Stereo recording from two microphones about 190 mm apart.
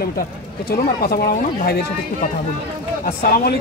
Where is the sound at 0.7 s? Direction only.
50° left (ahead or behind).